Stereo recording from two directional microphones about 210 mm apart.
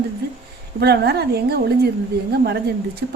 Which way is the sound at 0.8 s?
50° right (ahead or behind).